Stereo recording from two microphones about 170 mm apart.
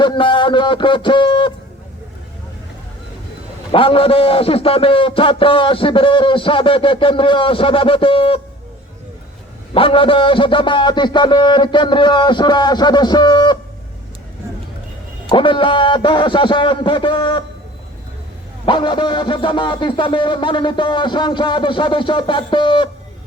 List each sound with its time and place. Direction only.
0.0 s speech: 30° left (ahead or behind)
3.7 s a man's voice: 30° left (ahead or behind)
9.7 s speech: 30° left (ahead or behind)
15.3 s speech: 30° left (ahead or behind)
18.6 s speech: 30° left (ahead or behind)